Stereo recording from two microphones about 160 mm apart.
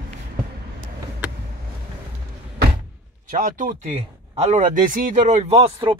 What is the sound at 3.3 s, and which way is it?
Speech, 55° right (ahead or behind).